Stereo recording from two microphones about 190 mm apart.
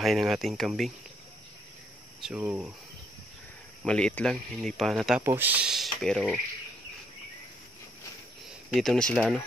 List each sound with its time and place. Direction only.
0.0 s speech: centre (ahead or behind)
2.2 s speech: 5° right (ahead or behind)
3.8 s speech: 5° left (ahead or behind)
5.2 s speech: 10° right (ahead or behind)
8.6 s speech: centre (ahead or behind)